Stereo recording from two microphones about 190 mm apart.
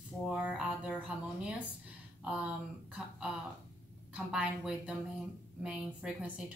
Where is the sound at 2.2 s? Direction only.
5° right (ahead or behind).